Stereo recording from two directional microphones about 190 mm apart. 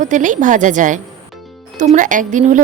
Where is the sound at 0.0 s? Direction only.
40° right (ahead or behind).